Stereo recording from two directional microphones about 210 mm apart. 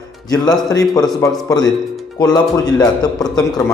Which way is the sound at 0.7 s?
15° left (ahead or behind).